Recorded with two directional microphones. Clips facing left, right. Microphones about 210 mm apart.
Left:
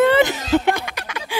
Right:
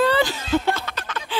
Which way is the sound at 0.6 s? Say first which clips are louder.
Left 3 dB; 15° left (ahead or behind).